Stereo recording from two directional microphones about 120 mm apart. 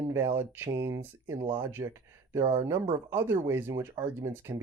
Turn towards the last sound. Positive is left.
turn(degrees=-20)  # may be behind; listen again after turning